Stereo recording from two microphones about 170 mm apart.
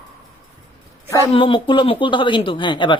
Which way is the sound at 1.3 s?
30° left (ahead or behind).